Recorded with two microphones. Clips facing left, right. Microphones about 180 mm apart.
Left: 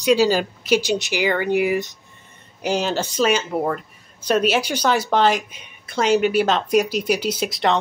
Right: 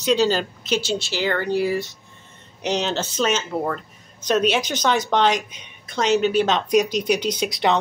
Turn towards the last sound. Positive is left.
turn(degrees=0)  # may be behind; listen again after turning